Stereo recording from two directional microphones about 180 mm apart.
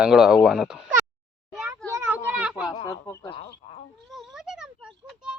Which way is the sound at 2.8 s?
20° left (ahead or behind).